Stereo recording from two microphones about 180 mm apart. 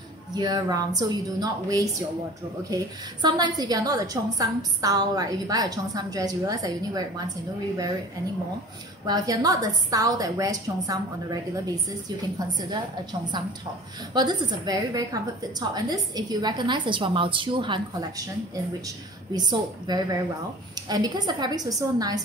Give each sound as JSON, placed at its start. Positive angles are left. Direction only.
{"t": 0.4, "sound": "a woman's voice", "side_deg": -20}
{"t": 9.0, "sound": "a woman's voice", "side_deg": -20}
{"t": 14.1, "sound": "a woman's voice", "side_deg": -25}
{"t": 19.3, "sound": "a woman's voice", "side_deg": -20}